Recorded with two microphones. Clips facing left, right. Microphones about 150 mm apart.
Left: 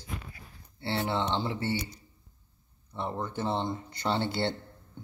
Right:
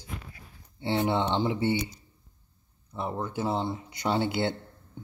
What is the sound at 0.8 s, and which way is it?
Speech, 15° right (ahead or behind).